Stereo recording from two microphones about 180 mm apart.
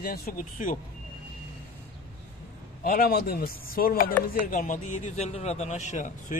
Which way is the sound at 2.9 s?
55° left (ahead or behind).